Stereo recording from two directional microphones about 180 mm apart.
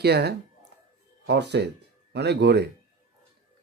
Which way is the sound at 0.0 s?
65° right (ahead or behind).